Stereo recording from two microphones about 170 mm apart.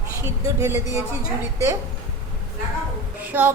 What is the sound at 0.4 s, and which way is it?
Speech, 15° right (ahead or behind).